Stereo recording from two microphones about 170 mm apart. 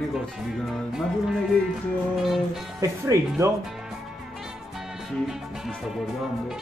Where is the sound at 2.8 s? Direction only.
20° right (ahead or behind).